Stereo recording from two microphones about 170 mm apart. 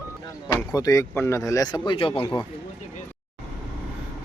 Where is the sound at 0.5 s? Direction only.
20° left (ahead or behind).